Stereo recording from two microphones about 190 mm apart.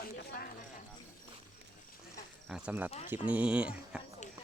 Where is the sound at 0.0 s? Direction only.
55° left (ahead or behind).